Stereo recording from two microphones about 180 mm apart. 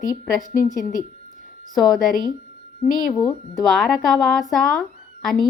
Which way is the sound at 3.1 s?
20° left (ahead or behind).